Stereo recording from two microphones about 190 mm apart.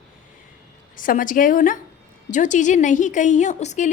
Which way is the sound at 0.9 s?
45° left (ahead or behind).